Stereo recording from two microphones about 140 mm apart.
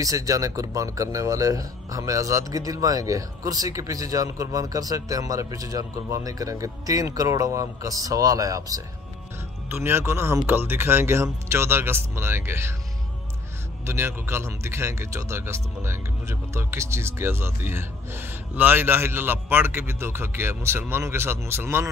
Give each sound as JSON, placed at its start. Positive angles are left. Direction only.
{"t": 0.0, "sound": "a man's voice", "side_deg": -25}
{"t": 13.8, "sound": "a man's voice", "side_deg": -20}